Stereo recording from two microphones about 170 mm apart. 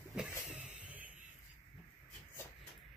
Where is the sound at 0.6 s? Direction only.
10° right (ahead or behind).